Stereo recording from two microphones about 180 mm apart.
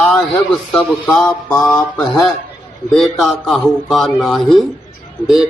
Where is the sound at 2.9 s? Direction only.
Centre (ahead or behind).